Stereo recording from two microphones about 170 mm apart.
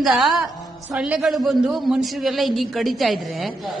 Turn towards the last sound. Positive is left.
turn(degrees=0)  # may be behind; listen again after turning